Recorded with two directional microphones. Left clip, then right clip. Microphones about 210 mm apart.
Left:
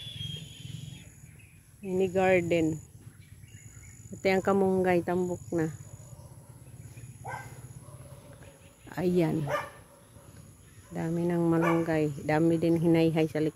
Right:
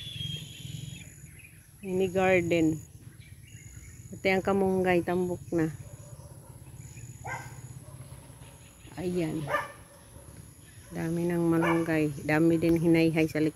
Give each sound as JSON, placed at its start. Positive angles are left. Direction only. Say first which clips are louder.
{"t": 0.7, "sound": "a sound", "louder": "right 3 dB", "side_deg": 5}
{"t": 1.9, "sound": "speech", "louder": "even", "side_deg": 10}
{"t": 4.2, "sound": "speech", "louder": "left 1 dB", "side_deg": 15}
{"t": 8.8, "sound": "speech", "louder": "left 4 dB", "side_deg": 40}
{"t": 10.9, "sound": "speech", "louder": "even", "side_deg": 15}